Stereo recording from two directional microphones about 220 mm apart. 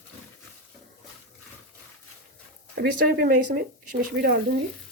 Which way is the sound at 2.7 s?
45° right (ahead or behind).